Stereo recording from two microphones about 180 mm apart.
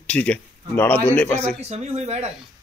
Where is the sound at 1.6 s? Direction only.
35° right (ahead or behind).